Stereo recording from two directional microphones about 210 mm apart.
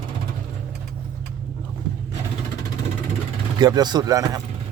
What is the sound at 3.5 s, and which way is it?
Speech, 20° right (ahead or behind).